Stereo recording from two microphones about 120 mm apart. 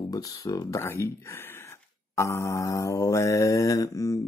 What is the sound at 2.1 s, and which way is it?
Mantra, 25° left (ahead or behind).